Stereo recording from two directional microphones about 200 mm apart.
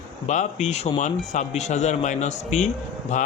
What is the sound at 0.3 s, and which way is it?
Speech, 35° left (ahead or behind).